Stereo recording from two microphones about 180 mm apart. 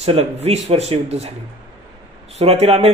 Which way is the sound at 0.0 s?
35° right (ahead or behind).